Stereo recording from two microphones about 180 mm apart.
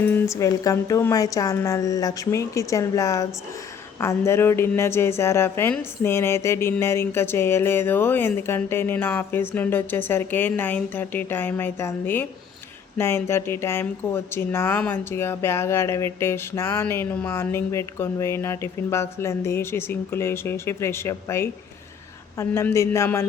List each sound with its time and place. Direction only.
0.0 s speech: 10° left (ahead or behind)